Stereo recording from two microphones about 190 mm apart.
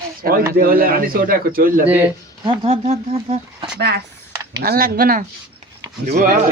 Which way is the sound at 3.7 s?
60° right (ahead or behind).